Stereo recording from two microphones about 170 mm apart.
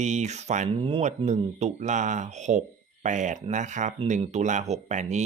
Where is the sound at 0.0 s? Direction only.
40° right (ahead or behind).